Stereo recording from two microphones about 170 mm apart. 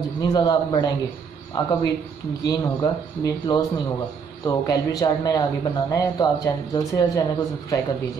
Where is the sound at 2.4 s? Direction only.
20° left (ahead or behind).